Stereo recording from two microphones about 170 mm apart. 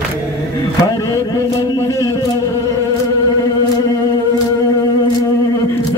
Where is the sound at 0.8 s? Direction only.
20° left (ahead or behind).